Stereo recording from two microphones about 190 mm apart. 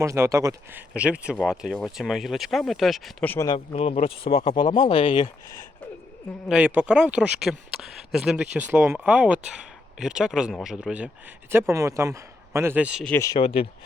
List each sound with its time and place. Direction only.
0.0 s speech: 15° right (ahead or behind); by 3.5 s 10° left (ahead or behind)
3.5 s speech: 30° left (ahead or behind)
6.5 s a man's voice: 5° right (ahead or behind)
13.1 s speech: 15° left (ahead or behind)
13.4 s speech: 30° left (ahead or behind)